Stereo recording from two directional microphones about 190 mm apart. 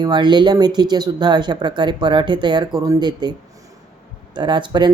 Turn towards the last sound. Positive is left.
turn(degrees=-25)  # may be behind; listen again after turning